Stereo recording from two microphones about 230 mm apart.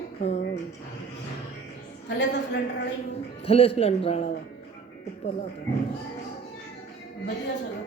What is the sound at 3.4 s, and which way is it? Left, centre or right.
Speech, left.